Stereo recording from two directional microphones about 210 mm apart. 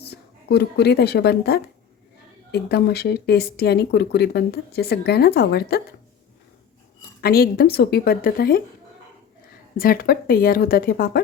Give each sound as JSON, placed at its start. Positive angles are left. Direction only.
{"t": 0.0, "sound": "speech", "side_deg": 50}
{"t": 7.2, "sound": "speech", "side_deg": 45}
{"t": 9.7, "sound": "speech", "side_deg": 45}